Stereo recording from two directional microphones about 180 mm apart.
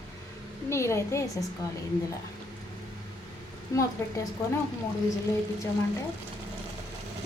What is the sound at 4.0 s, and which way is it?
Speech, 15° left (ahead or behind).